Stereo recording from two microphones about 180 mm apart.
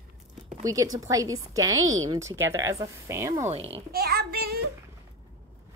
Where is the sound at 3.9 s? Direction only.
60° right (ahead or behind).